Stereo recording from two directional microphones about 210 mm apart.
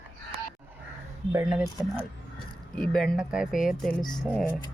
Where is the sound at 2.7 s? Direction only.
5° left (ahead or behind).